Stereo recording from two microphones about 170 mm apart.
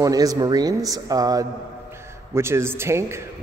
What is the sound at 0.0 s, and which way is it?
A man's voice, 20° right (ahead or behind).